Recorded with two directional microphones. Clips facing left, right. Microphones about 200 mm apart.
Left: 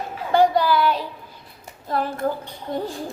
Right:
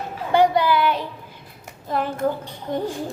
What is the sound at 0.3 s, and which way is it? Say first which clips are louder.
Child singing: even; 20° right (ahead or behind).